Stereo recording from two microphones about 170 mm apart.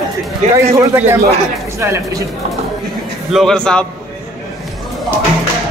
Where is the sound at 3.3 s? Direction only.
Centre (ahead or behind).